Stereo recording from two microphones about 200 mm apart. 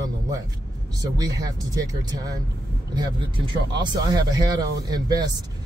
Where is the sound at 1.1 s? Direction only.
20° right (ahead or behind).